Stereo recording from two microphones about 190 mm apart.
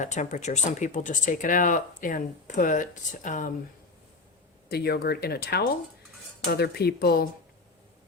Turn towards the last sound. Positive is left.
turn(degrees=55)  # may be behind; listen again after turning